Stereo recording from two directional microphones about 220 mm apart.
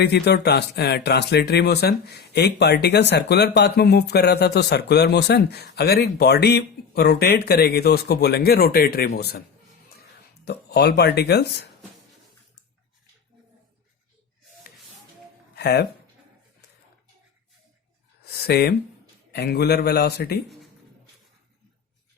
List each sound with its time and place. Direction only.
0.0 s speech: 45° left (ahead or behind)
10.4 s speech: 50° left (ahead or behind)
15.5 s speech: 45° left (ahead or behind)
18.4 s speech: 45° left (ahead or behind)